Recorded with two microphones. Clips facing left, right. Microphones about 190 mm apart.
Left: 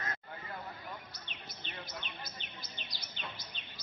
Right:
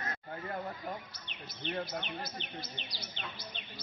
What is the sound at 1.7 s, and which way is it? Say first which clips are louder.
Speech: right 10 dB; 60° right (ahead or behind).